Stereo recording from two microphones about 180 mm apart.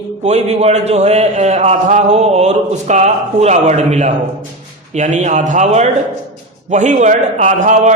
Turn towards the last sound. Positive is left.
turn(degrees=-45)  # may be behind; listen again after turning